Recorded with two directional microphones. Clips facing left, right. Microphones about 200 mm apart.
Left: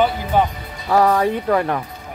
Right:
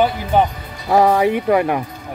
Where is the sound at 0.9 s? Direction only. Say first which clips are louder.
Right 2 dB; 15° right (ahead or behind).